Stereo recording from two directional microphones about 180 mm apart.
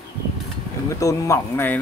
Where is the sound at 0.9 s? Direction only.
15° left (ahead or behind).